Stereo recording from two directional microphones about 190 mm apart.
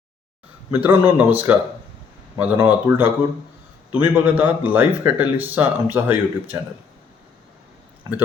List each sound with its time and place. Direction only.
0.7 s speech: 10° right (ahead or behind)
8.1 s speech: 20° right (ahead or behind)